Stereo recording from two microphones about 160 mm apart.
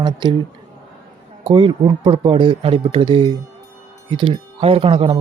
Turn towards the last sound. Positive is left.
turn(degrees=-35)  # may be behind; listen again after turning